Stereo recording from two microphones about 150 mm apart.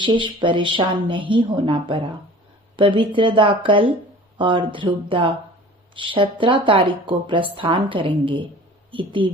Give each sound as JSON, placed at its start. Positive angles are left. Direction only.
{"t": 0.0, "sound": "speech", "side_deg": -30}